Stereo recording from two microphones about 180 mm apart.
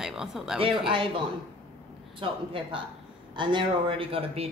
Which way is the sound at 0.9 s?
30° right (ahead or behind).